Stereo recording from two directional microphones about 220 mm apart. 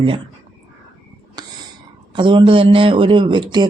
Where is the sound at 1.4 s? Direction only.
20° right (ahead or behind).